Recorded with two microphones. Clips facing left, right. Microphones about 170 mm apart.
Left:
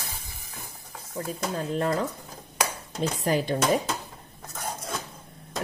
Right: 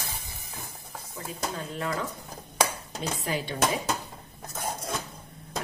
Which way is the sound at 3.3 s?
40° left (ahead or behind).